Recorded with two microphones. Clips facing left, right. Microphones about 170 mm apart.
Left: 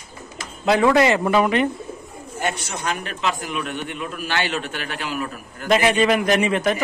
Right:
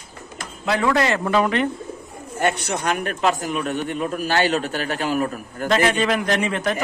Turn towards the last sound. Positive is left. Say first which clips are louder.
# left 3 dB
turn(degrees=10)  # may be behind; listen again after turning